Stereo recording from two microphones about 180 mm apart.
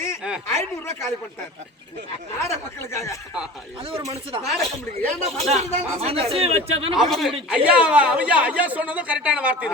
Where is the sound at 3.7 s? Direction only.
30° right (ahead or behind).